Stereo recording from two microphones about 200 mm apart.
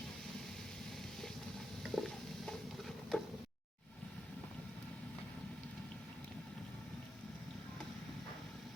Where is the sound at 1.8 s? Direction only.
Centre (ahead or behind).